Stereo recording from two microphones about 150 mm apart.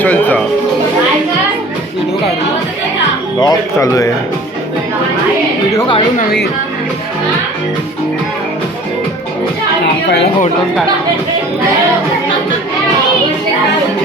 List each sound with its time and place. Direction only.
0.0 s speech: 10° left (ahead or behind)
3.4 s speech: 20° left (ahead or behind)
6.1 s speech: 90° left